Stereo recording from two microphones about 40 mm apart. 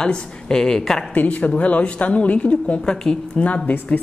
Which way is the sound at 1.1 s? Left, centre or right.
Left.